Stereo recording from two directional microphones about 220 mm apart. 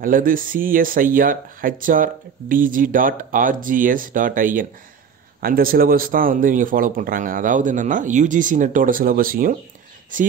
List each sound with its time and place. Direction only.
0.0 s speech: 40° right (ahead or behind)